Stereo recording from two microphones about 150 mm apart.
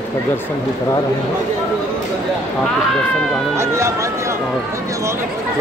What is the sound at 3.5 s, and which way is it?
Speech, 20° right (ahead or behind).